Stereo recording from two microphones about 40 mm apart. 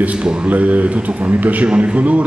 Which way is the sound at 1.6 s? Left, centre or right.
Right.